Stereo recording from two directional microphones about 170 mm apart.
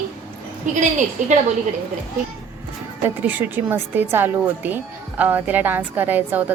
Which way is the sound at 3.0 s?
10° right (ahead or behind).